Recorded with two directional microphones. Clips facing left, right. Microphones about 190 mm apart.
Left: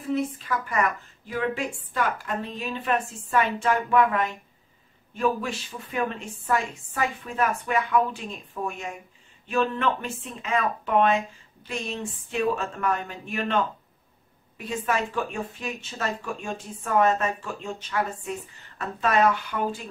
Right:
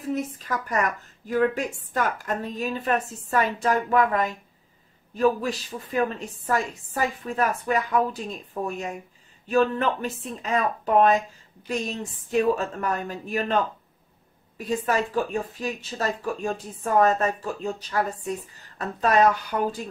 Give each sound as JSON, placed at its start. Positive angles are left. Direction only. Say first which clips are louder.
{"t": 0.1, "sound": "speech", "louder": "left 2 dB", "side_deg": -40}
{"t": 14.6, "sound": "speech", "louder": "right 3 dB", "side_deg": -35}